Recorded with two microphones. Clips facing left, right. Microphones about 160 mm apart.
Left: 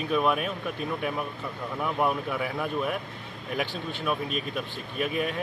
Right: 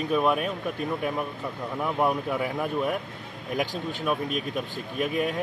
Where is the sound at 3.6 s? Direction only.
40° right (ahead or behind).